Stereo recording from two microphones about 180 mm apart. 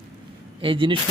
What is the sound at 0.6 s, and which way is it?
Speech, 30° right (ahead or behind).